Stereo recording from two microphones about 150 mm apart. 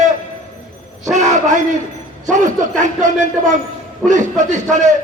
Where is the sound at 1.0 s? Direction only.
50° right (ahead or behind).